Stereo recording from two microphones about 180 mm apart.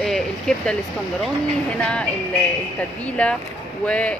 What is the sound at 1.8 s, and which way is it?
Speech, 5° left (ahead or behind).